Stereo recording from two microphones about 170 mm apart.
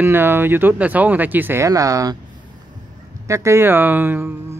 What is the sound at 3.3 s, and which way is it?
Speech, 15° right (ahead or behind).